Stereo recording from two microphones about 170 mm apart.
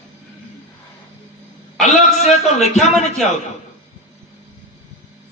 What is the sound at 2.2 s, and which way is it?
Speech, 40° left (ahead or behind).